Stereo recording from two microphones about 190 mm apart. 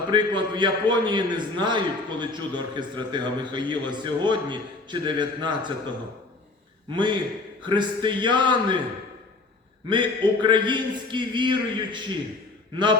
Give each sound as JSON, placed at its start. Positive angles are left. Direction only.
{"t": 0.1, "sound": "a man's voice", "side_deg": -25}
{"t": 6.9, "sound": "a man's voice", "side_deg": -25}
{"t": 9.9, "sound": "a man's voice", "side_deg": -25}